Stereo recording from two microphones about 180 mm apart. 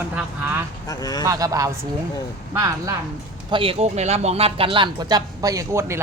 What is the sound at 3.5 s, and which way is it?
Speech, 30° right (ahead or behind).